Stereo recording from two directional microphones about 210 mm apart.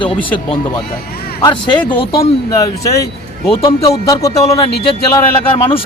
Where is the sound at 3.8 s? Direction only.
15° left (ahead or behind).